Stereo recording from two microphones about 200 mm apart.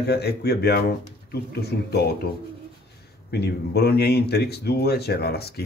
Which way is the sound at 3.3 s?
55° left (ahead or behind).